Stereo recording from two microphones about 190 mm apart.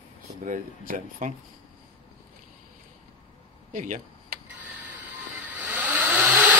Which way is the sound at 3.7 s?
45° right (ahead or behind).